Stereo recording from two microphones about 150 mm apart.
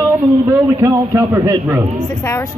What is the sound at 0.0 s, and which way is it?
A man's voice, 20° right (ahead or behind).